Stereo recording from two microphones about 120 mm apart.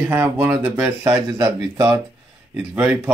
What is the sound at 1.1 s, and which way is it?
Speech, 30° right (ahead or behind).